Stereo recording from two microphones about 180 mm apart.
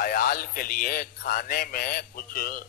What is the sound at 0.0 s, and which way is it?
Speech, 55° left (ahead or behind).